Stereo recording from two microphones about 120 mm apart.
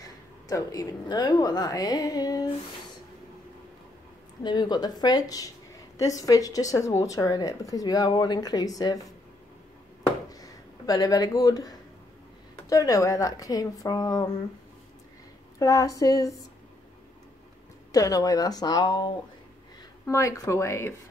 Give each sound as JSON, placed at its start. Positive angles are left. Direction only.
{"t": 0.5, "sound": "speech", "side_deg": 30}
{"t": 4.4, "sound": "speech", "side_deg": 35}
{"t": 10.3, "sound": "a sound", "side_deg": 30}
{"t": 12.6, "sound": "speech", "side_deg": 30}
{"t": 15.6, "sound": "speech", "side_deg": 25}
{"t": 17.9, "sound": "speech", "side_deg": 30}
{"t": 20.1, "sound": "speech", "side_deg": 25}